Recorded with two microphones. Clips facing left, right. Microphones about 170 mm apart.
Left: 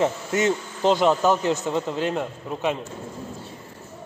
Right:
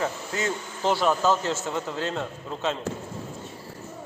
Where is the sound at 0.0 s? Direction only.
20° left (ahead or behind).